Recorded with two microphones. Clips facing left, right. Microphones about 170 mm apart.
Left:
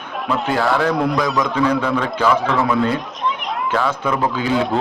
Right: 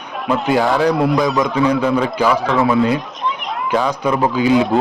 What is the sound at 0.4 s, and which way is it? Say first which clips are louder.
Speech: right 3 dB; 15° right (ahead or behind).